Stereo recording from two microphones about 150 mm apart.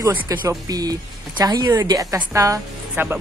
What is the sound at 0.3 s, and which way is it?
Speech, 25° right (ahead or behind).